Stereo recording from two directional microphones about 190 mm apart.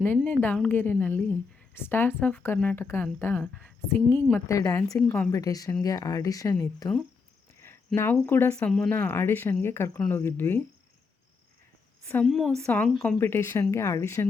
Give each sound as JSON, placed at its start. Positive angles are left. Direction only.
{"t": 0.0, "sound": "a woman's voice", "side_deg": 10}
{"t": 7.9, "sound": "a woman's voice", "side_deg": 10}
{"t": 12.0, "sound": "a woman's voice", "side_deg": 5}